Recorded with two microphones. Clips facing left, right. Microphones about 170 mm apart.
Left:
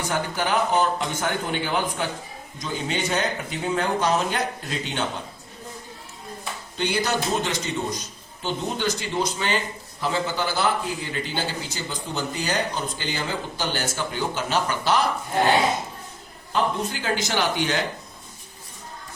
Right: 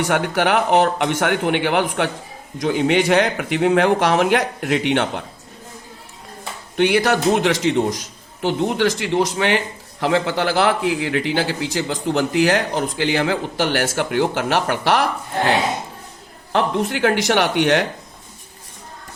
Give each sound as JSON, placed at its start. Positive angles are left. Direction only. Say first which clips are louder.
{"t": 0.0, "sound": "a man's voice", "louder": "right 7 dB", "side_deg": -75}
{"t": 6.7, "sound": "a man's voice", "louder": "right 8 dB", "side_deg": -70}
{"t": 16.5, "sound": "a man's voice", "louder": "right 5 dB", "side_deg": -75}